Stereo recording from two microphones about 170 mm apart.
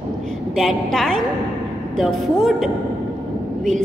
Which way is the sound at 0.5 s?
Centre (ahead or behind).